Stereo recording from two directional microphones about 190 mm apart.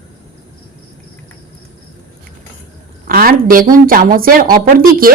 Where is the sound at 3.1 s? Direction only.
50° right (ahead or behind).